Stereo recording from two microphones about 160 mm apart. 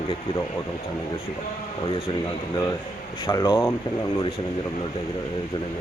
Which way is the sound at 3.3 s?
20° left (ahead or behind).